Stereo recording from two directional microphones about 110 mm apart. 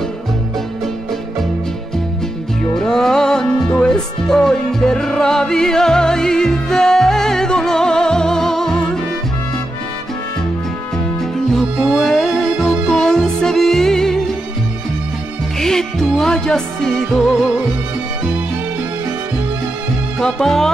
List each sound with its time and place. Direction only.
2.8 s music: 5° left (ahead or behind)
11.5 s music: centre (ahead or behind)
15.6 s music: 5° left (ahead or behind)
20.2 s music: 5° left (ahead or behind)